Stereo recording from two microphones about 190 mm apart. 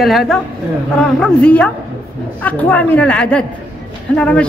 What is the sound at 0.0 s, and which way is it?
A man's voice, centre (ahead or behind).